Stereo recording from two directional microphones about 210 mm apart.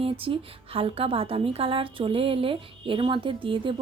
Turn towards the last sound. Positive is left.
turn(degrees=-25)  # may be behind; listen again after turning